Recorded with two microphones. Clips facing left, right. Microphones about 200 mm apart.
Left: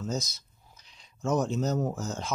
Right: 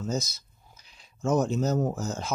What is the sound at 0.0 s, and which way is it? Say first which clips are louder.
Speech: right 2 dB; 5° right (ahead or behind).